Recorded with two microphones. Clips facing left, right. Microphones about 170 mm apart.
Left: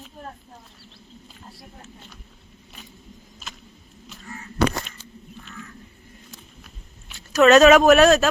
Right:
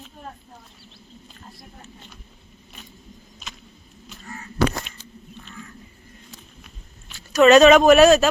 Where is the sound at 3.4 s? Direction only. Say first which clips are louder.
Even; 5° left (ahead or behind).